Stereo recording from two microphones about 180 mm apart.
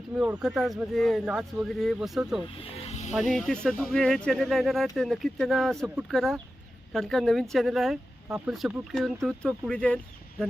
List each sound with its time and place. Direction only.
0.2 s speech: 5° right (ahead or behind)
2.6 s snake: 35° left (ahead or behind)
3.2 s speech: centre (ahead or behind)